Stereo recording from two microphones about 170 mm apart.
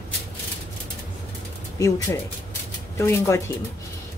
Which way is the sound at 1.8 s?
20° left (ahead or behind).